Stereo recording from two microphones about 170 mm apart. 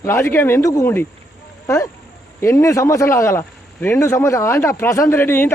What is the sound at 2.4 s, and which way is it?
Speech, 15° left (ahead or behind).